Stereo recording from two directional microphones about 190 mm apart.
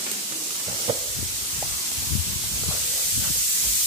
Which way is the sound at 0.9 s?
30° right (ahead or behind).